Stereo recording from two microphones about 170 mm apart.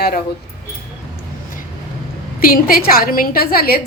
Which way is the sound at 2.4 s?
60° left (ahead or behind).